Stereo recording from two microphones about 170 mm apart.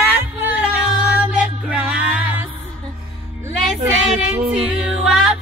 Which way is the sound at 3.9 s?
5° right (ahead or behind).